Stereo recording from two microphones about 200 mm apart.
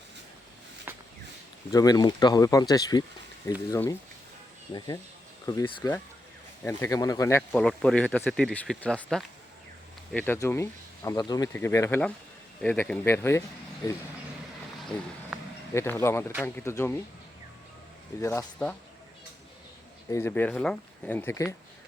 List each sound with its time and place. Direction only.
0.9 s a sound: 10° right (ahead or behind)
1.7 s speech: 20° left (ahead or behind)
5.5 s speech: 20° left (ahead or behind)
14.8 s a sound: centre (ahead or behind)
15.7 s speech: 15° left (ahead or behind)
18.2 s speech: 15° left (ahead or behind)
20.1 s speech: 15° left (ahead or behind)